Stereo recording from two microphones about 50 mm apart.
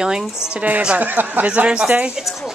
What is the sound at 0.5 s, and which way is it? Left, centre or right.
Speech, right.